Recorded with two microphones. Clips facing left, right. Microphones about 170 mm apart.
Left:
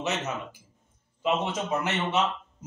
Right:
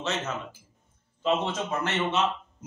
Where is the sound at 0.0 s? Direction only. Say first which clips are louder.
Left 1 dB; 15° left (ahead or behind).